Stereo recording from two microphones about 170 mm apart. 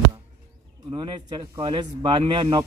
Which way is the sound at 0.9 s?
30° right (ahead or behind).